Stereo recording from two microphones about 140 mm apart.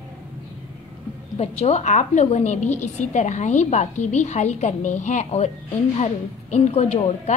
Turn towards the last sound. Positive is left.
turn(degrees=50)  # may be behind; listen again after turning